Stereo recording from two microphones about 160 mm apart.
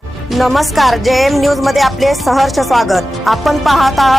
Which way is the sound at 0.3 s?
Centre (ahead or behind).